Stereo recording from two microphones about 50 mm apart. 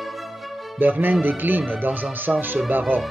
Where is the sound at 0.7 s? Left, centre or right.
Right.